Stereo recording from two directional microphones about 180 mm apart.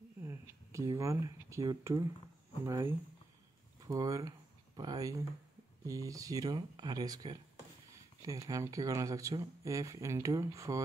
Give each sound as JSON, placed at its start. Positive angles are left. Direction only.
{"t": 0.2, "sound": "speech", "side_deg": -15}